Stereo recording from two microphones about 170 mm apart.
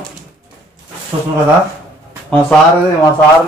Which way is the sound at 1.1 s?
30° right (ahead or behind).